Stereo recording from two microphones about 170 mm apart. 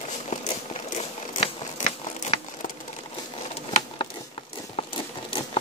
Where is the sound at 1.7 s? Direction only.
45° left (ahead or behind).